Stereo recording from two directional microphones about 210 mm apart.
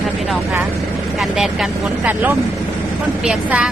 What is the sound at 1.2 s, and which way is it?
Speech, centre (ahead or behind).